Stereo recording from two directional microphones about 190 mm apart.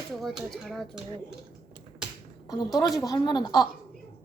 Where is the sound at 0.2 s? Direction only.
Centre (ahead or behind).